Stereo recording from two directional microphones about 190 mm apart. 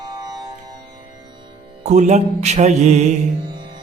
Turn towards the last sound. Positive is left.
turn(degrees=-35)  # may be behind; listen again after turning